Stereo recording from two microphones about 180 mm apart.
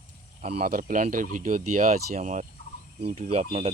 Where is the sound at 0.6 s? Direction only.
50° right (ahead or behind).